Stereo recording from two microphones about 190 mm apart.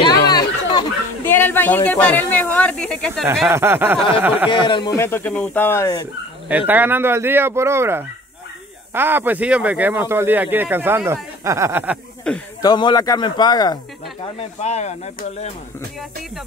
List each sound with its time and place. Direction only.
0.3 s a sound: 20° left (ahead or behind)
1.3 s speech: 10° left (ahead or behind)
3.4 s speech: 10° right (ahead or behind)
4.5 s speech: 25° left (ahead or behind)
6.5 s speech: 10° right (ahead or behind)
12.3 s speech: 5° left (ahead or behind)
12.6 s a man's voice: 20° left (ahead or behind)
14.4 s speech: 35° left (ahead or behind)